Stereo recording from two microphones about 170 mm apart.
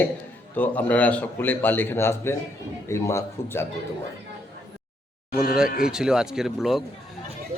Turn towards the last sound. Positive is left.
turn(degrees=0)  # may be behind; listen again after turning